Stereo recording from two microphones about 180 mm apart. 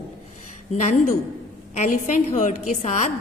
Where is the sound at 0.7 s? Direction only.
40° left (ahead or behind).